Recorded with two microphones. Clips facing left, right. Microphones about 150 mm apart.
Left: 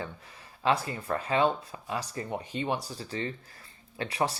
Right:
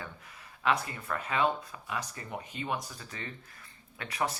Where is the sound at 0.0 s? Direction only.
30° left (ahead or behind).